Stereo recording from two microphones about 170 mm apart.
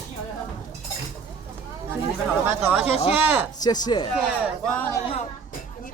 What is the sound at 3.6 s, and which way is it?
Speech, 25° left (ahead or behind).